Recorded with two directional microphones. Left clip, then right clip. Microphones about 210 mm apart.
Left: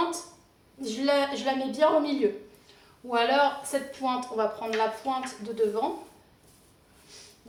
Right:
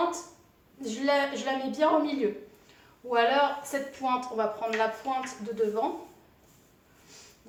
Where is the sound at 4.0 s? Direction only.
10° left (ahead or behind).